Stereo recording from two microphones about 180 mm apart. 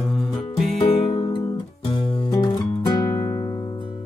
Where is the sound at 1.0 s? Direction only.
30° left (ahead or behind).